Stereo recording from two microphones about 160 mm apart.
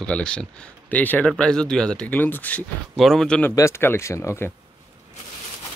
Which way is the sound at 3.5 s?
15° left (ahead or behind).